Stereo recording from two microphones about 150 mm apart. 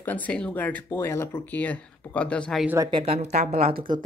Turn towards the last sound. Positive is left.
turn(degrees=-80)